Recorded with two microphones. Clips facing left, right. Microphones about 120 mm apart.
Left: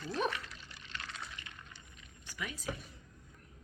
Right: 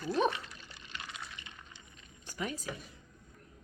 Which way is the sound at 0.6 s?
15° right (ahead or behind).